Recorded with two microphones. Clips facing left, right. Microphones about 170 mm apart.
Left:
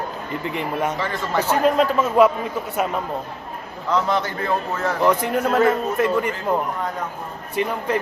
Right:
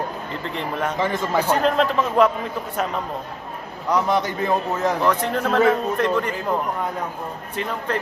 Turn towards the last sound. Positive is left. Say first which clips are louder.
# left 3 dB
turn(degrees=10)  # may be behind; listen again after turning